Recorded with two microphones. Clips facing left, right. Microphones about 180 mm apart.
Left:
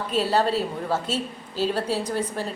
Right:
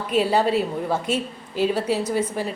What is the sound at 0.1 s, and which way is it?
A woman's voice, 10° right (ahead or behind).